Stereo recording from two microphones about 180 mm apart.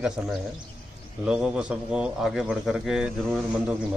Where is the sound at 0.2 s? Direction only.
5° right (ahead or behind).